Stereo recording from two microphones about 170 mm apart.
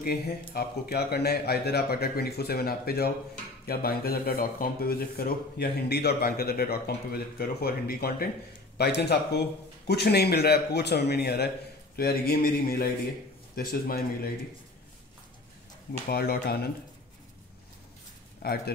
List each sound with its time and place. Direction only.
0.0 s speech: 65° left (ahead or behind)
16.1 s speech: 65° left (ahead or behind)
18.4 s speech: 65° left (ahead or behind)